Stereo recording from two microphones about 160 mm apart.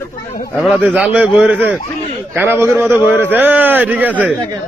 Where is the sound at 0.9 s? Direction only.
5° right (ahead or behind).